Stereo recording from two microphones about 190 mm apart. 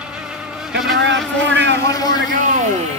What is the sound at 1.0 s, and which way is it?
Speech, 75° right (ahead or behind).